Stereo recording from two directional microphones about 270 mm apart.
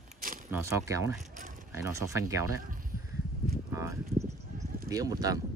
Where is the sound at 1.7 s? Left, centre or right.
Centre.